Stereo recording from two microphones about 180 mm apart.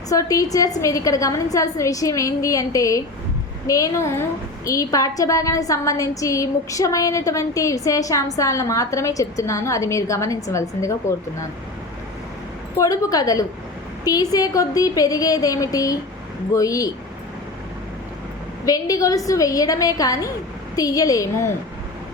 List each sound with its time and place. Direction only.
0.1 s a woman's voice: 20° left (ahead or behind)
12.7 s a woman's voice: 20° left (ahead or behind)
18.6 s a woman's voice: 20° left (ahead or behind)